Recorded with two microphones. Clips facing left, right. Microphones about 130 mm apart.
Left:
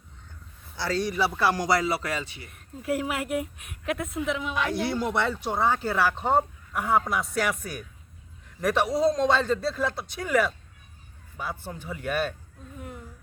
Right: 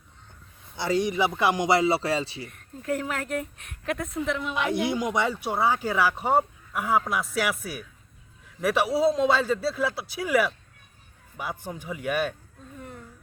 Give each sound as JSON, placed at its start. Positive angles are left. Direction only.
{"t": 0.8, "sound": "speech", "side_deg": -20}
{"t": 2.5, "sound": "speech", "side_deg": 5}
{"t": 4.5, "sound": "speech", "side_deg": -20}